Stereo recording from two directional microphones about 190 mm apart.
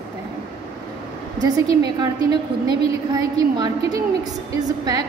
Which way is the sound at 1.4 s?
20° right (ahead or behind).